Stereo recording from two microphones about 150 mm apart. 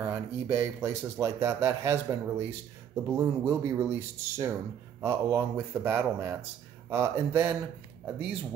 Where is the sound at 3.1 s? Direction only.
20° right (ahead or behind).